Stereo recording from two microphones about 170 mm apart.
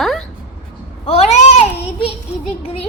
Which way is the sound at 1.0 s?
35° left (ahead or behind).